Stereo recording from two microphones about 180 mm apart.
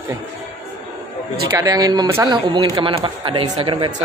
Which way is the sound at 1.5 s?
20° right (ahead or behind).